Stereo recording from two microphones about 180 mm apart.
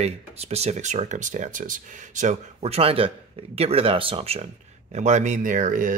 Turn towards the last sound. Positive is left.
turn(degrees=-45)  # may be behind; listen again after turning